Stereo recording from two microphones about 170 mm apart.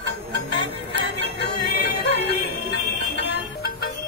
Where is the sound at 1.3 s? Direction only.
85° left.